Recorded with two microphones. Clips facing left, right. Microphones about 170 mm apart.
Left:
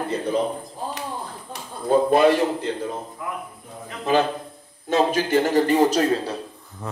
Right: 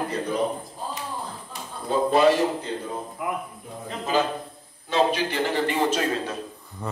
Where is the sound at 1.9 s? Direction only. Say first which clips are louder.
Left 5 dB; 50° left (ahead or behind).